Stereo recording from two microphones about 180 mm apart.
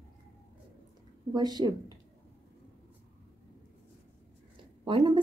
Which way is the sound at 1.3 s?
25° right (ahead or behind).